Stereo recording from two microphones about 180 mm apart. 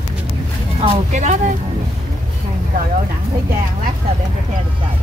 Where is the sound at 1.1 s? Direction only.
40° right (ahead or behind).